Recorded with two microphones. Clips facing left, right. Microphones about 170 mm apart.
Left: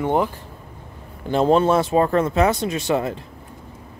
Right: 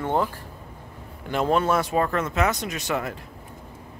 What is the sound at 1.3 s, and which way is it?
A man's voice, 30° left (ahead or behind).